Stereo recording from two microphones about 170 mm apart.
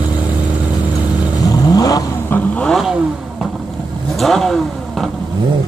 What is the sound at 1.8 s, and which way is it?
Vehicle, 20° left (ahead or behind).